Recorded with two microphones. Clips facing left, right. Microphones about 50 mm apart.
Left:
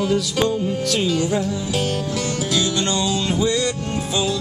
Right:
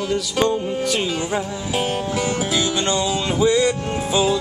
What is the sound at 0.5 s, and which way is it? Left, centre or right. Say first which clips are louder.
Music: even; centre.